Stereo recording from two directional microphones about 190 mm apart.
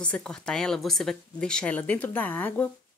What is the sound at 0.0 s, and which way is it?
Speech, 5° left (ahead or behind).